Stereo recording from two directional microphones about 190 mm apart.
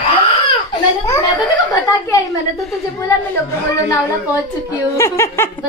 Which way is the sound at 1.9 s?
20° left (ahead or behind).